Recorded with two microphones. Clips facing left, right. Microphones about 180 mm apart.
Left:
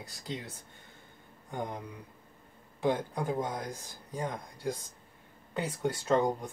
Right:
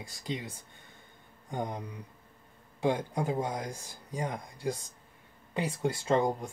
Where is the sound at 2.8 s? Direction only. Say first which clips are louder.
Right 1 dB; 15° right (ahead or behind).